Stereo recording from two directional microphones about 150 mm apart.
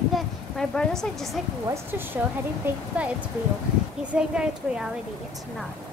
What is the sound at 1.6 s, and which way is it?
Speech, 15° right (ahead or behind).